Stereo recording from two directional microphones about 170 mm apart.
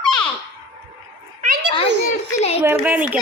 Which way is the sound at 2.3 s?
35° left (ahead or behind).